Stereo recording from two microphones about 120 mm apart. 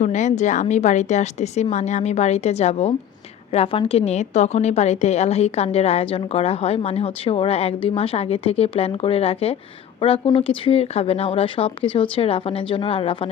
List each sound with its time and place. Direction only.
0.0 s a woman's voice: 75° left (ahead or behind); by 13.3 s 50° left (ahead or behind)